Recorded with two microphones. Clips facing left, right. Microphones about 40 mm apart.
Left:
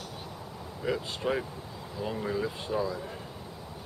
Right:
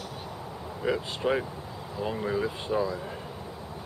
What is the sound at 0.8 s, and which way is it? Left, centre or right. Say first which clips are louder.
Speech: right 3 dB; centre.